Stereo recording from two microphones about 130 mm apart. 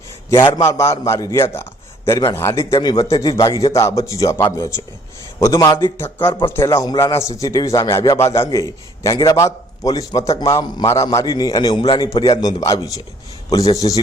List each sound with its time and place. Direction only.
0.3 s a man's voice: 35° left (ahead or behind)
0.6 s a man's voice: 20° left (ahead or behind)
2.7 s a man's voice: 35° left (ahead or behind)